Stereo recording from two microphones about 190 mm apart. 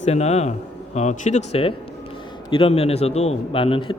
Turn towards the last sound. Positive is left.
turn(degrees=25)  # may be behind; listen again after turning